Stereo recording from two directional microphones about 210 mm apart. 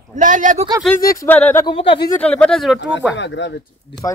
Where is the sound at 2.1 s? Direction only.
5° left (ahead or behind).